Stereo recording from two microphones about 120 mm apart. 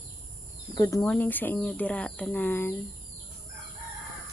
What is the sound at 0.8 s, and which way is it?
Speech, 25° left (ahead or behind).